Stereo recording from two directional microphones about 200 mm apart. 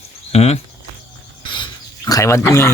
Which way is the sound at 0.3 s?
30° left (ahead or behind).